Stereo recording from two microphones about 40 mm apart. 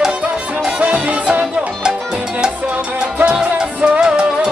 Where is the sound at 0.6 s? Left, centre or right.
Centre.